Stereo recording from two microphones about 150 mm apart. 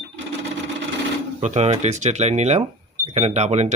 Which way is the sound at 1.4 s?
50° right (ahead or behind).